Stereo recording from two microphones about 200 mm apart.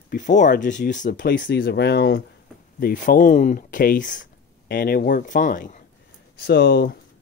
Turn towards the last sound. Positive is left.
turn(degrees=60)  # may be behind; listen again after turning